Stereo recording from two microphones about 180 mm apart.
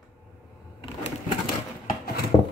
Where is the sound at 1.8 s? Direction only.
60° left (ahead or behind).